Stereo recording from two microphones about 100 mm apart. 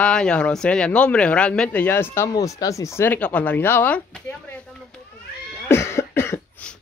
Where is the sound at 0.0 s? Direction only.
10° left (ahead or behind).